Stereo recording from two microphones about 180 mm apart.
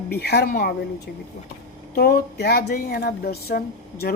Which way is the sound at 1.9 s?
60° left (ahead or behind).